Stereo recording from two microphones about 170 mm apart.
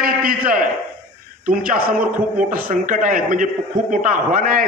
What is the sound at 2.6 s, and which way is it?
A man's voice, 50° right (ahead or behind).